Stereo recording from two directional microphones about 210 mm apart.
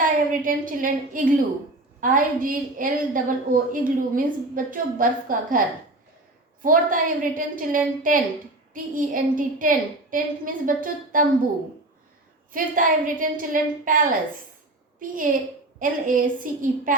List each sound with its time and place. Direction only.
0.0 s a woman's voice: 40° right (ahead or behind)
12.5 s a woman's voice: 40° right (ahead or behind)